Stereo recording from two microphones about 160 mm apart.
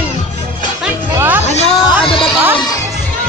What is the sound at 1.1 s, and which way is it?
Music, 10° right (ahead or behind).